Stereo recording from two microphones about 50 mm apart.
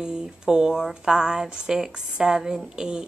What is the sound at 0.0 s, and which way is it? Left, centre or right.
Speech, centre.